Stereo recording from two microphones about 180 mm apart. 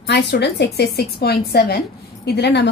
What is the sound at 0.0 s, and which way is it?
A woman's voice, 70° left (ahead or behind).